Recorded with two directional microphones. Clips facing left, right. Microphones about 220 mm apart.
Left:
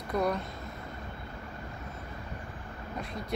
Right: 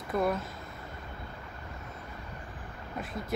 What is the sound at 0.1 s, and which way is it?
Speech, 5° right (ahead or behind).